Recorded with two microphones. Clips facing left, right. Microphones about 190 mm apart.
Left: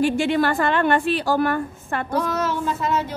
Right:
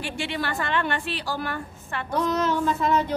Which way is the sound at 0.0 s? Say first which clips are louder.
Left 11 dB; 45° left (ahead or behind).